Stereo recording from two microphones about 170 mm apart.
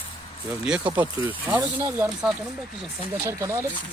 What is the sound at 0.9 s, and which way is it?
Speech, 10° right (ahead or behind).